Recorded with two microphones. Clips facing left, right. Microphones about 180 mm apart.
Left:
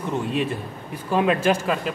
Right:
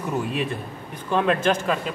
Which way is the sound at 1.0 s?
10° left (ahead or behind).